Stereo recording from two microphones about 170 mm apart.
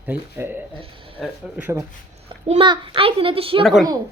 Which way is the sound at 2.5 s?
30° right (ahead or behind).